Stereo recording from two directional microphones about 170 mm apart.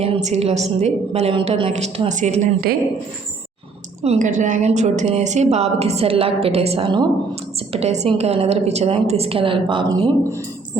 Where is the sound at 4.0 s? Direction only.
45° right (ahead or behind).